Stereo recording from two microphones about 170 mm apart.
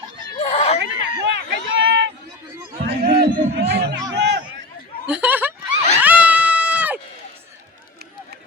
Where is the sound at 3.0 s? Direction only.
65° right (ahead or behind).